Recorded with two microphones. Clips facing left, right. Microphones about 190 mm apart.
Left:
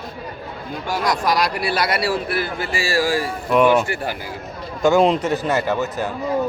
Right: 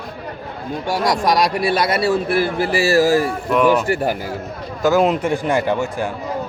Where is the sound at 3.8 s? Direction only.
40° right (ahead or behind).